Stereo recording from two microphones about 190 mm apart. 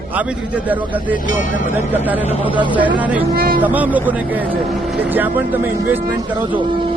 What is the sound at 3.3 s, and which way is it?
Speech, 50° right (ahead or behind).